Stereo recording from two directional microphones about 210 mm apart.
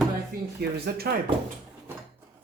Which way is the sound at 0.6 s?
50° right (ahead or behind).